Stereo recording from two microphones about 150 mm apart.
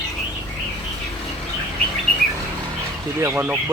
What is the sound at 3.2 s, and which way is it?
Speech, 15° right (ahead or behind).